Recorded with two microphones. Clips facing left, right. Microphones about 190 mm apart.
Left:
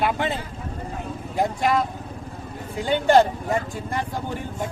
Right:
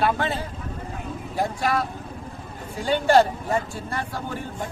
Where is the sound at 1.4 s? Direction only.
20° left (ahead or behind).